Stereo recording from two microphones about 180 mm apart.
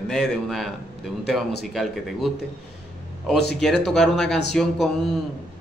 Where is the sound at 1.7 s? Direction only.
Centre (ahead or behind).